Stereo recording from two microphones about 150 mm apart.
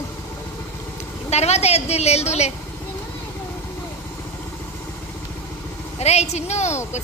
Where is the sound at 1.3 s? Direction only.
45° left (ahead or behind).